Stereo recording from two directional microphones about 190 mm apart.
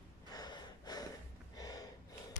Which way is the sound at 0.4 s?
20° left (ahead or behind).